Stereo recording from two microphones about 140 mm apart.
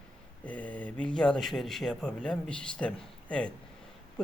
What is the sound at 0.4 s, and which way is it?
Speech, 10° left (ahead or behind).